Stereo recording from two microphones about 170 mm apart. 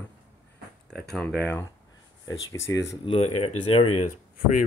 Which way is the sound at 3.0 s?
35° left (ahead or behind).